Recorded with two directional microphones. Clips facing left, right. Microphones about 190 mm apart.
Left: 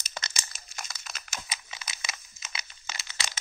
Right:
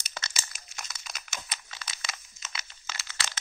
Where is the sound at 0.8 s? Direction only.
Centre (ahead or behind).